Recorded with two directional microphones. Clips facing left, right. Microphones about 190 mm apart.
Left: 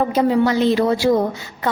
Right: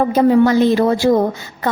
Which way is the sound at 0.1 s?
45° right (ahead or behind).